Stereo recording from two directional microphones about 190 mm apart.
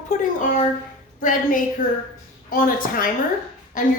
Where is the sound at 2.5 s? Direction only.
45° left (ahead or behind).